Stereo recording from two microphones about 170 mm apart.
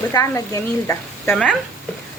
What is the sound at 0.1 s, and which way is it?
A woman's voice, 20° left (ahead or behind).